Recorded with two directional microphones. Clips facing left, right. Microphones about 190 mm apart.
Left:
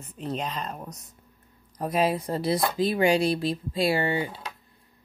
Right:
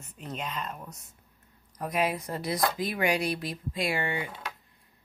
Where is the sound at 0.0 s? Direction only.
35° left (ahead or behind).